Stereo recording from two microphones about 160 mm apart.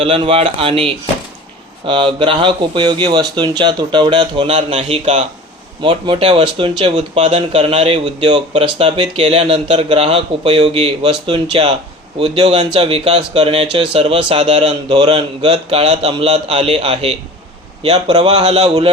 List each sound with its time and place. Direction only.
0.0 s speech: 35° right (ahead or behind)
5.8 s speech: 35° right (ahead or behind)
18.2 s speech: 45° right (ahead or behind)